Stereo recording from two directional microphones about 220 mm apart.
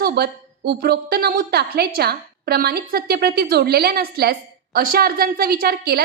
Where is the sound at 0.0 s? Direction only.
45° right (ahead or behind).